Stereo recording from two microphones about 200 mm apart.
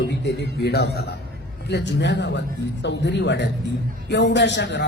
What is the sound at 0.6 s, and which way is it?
A man's voice, 55° left (ahead or behind).